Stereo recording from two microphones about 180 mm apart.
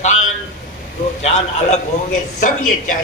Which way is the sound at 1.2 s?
35° left (ahead or behind).